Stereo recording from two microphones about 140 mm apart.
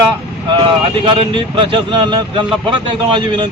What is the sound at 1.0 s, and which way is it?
Speech, 35° right (ahead or behind).